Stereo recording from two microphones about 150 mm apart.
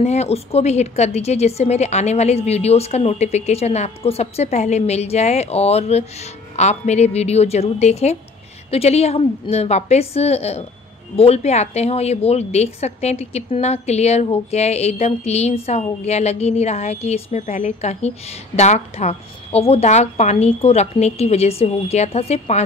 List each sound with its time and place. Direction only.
0.0 s a woman's voice: 45° left (ahead or behind)